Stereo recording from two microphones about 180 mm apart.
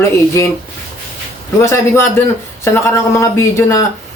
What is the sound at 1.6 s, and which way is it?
Speech, 15° left (ahead or behind).